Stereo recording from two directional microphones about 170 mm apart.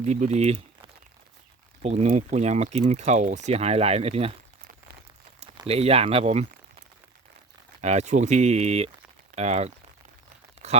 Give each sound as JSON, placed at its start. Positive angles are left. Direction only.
{"t": 0.0, "sound": "speech", "side_deg": -40}
{"t": 1.8, "sound": "speech", "side_deg": -40}
{"t": 5.6, "sound": "speech", "side_deg": -35}
{"t": 7.8, "sound": "speech", "side_deg": -40}